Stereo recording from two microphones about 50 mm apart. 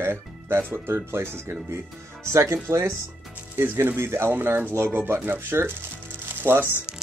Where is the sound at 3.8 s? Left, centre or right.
Right.